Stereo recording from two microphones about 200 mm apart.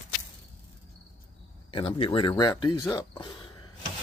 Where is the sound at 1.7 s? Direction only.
30° left (ahead or behind).